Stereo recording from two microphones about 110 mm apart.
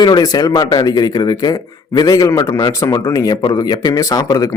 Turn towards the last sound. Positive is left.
turn(degrees=35)  # may be behind; listen again after turning